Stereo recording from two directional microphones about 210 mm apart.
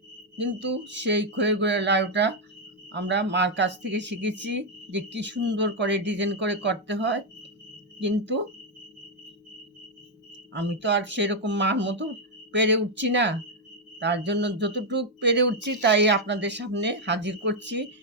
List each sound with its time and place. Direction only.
0.3 s speech: 60° right (ahead or behind)
10.5 s speech: 60° right (ahead or behind)